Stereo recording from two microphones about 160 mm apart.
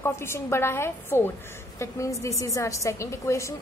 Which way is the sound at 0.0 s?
15° left (ahead or behind).